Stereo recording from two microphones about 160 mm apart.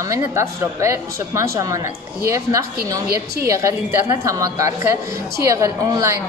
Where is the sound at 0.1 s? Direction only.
20° right (ahead or behind).